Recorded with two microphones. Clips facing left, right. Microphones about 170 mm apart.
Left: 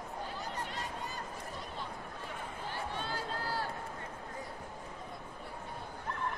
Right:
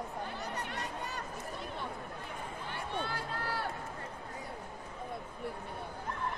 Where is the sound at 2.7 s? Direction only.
60° right (ahead or behind).